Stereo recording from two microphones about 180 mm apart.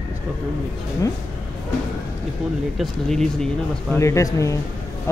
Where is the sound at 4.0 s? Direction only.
15° left (ahead or behind).